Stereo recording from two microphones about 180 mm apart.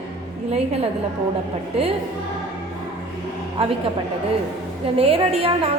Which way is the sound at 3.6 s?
35° right (ahead or behind).